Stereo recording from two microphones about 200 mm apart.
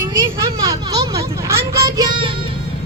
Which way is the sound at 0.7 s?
20° right (ahead or behind).